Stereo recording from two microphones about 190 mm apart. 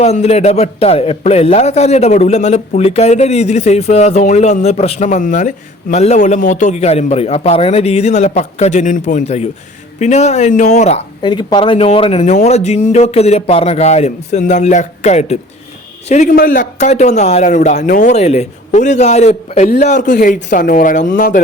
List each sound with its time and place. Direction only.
0.0 s a man's voice: 35° left (ahead or behind)
11.2 s a man's voice: 25° left (ahead or behind); by 21.4 s 45° left (ahead or behind)